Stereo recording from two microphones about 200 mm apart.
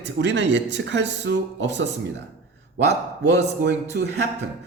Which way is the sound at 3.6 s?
60° right (ahead or behind).